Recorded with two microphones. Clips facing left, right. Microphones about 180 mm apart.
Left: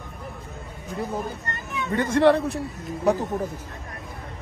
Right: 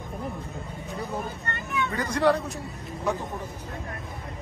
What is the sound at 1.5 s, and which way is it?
Speech, 30° left (ahead or behind).